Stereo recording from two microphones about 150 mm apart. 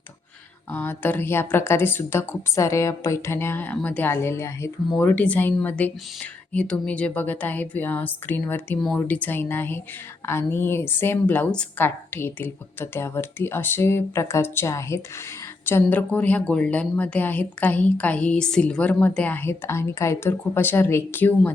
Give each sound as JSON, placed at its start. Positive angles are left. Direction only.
{"t": 0.7, "sound": "speech", "side_deg": 15}